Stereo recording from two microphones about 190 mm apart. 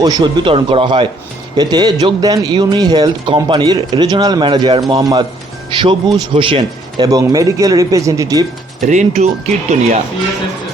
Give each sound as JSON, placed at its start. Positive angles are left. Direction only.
{"t": 0.0, "sound": "a man's voice", "side_deg": -20}
{"t": 8.8, "sound": "speech", "side_deg": -40}